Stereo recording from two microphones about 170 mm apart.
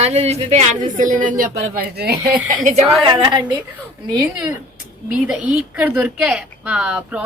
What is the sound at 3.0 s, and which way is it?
Speech, 25° right (ahead or behind).